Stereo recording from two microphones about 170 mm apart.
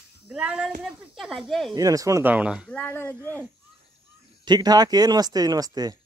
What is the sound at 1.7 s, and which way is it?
Speech, 20° right (ahead or behind).